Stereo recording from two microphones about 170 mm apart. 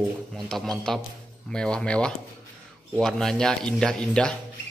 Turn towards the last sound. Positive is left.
turn(degrees=5)  # may be behind; listen again after turning